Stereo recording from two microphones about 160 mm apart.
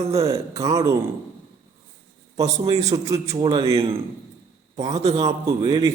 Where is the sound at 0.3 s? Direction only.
20° right (ahead or behind).